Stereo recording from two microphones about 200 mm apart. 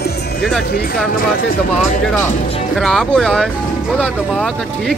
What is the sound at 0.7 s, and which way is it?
Speech, 50° left (ahead or behind).